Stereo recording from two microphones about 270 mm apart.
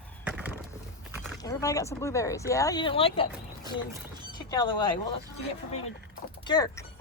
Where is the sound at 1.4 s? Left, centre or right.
Centre.